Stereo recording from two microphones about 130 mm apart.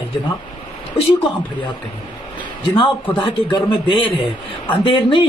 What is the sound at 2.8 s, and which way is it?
A man's voice, 40° left (ahead or behind).